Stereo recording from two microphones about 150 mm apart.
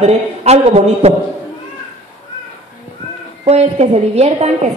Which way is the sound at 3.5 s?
45° right (ahead or behind).